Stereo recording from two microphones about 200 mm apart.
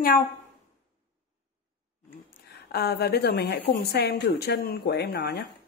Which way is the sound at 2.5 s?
50° left (ahead or behind).